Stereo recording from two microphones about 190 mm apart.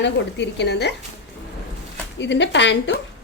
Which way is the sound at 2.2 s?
65° left (ahead or behind).